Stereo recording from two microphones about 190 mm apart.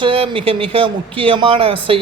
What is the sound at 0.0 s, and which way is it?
Speech, 30° right (ahead or behind).